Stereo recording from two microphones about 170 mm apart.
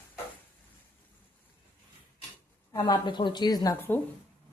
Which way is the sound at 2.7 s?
25° left (ahead or behind).